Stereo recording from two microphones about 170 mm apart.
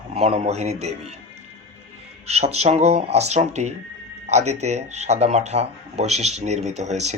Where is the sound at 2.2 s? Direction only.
40° right (ahead or behind).